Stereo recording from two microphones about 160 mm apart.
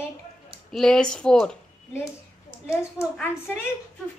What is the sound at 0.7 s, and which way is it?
Speech, centre (ahead or behind).